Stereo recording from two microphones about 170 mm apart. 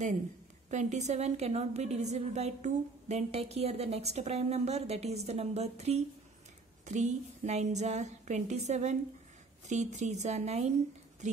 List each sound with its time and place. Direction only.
0.7 s a woman's voice: 45° right (ahead or behind)